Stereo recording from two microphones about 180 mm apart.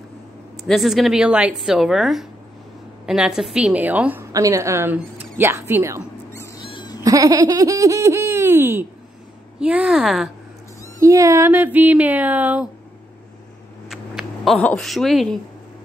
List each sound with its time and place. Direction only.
0.7 s a woman's voice: centre (ahead or behind)
6.3 s cat: 15° left (ahead or behind)
6.7 s goat: 25° left (ahead or behind)
7.0 s a woman's voice: 20° right (ahead or behind); by 10.3 s centre (ahead or behind)
11.0 s a woman's voice: 15° right (ahead or behind)
13.8 s a sound: centre (ahead or behind)